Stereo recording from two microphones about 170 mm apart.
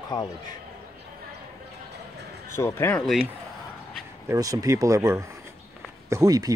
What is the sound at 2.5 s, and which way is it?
Speech, 15° left (ahead or behind).